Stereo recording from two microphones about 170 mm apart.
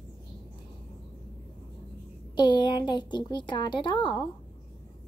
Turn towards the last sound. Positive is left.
turn(degrees=25)  # may be behind; listen again after turning